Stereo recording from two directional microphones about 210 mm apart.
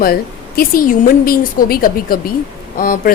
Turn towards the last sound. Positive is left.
turn(degrees=40)  # may be behind; listen again after turning